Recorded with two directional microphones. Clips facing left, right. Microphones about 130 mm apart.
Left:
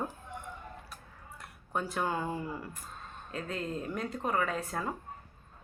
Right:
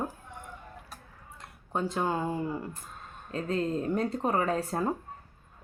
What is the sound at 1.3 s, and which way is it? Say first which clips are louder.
Speech: right 2 dB; 25° right (ahead or behind).